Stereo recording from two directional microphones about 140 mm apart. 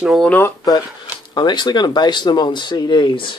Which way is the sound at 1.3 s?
30° left (ahead or behind).